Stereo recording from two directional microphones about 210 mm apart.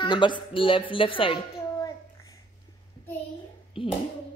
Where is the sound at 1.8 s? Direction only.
15° left (ahead or behind).